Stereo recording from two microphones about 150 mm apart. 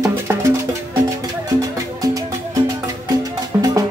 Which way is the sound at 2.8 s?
25° right (ahead or behind).